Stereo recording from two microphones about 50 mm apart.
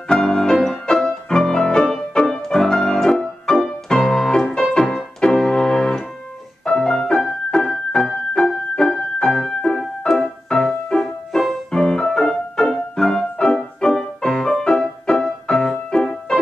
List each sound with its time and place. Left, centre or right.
0.1 s music: centre
4.7 s keyboard: centre
6.6 s music: centre